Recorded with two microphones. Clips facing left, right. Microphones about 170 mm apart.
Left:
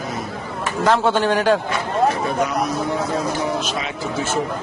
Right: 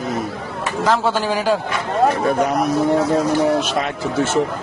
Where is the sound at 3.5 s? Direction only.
55° right (ahead or behind).